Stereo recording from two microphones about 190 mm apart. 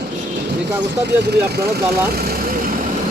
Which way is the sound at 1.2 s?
60° right (ahead or behind).